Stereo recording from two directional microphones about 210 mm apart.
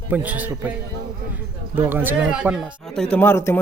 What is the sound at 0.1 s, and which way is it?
Speech, 5° right (ahead or behind).